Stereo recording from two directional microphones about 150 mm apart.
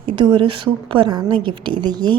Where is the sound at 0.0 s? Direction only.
35° right (ahead or behind).